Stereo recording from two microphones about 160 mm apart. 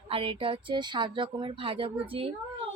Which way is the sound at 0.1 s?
35° right (ahead or behind).